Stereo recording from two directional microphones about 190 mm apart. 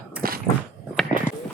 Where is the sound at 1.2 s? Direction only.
45° right (ahead or behind).